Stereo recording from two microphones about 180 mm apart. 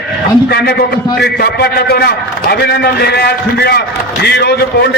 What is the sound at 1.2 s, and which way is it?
A man's voice, 60° left (ahead or behind).